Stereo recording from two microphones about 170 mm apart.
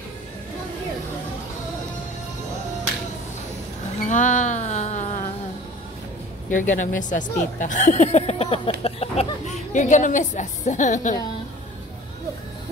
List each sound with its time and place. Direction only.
4.0 s music: 50° left (ahead or behind)
6.5 s speech: 50° left (ahead or behind)